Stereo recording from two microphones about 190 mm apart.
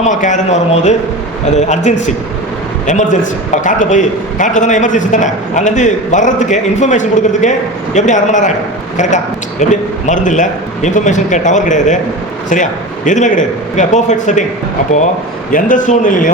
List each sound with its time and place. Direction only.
0.0 s a man's voice: 40° left (ahead or behind)
13.1 s a man's voice: 40° left (ahead or behind)
15.5 s a man's voice: 45° left (ahead or behind)